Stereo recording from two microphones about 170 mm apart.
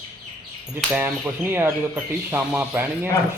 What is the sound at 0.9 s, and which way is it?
Speech, 10° right (ahead or behind).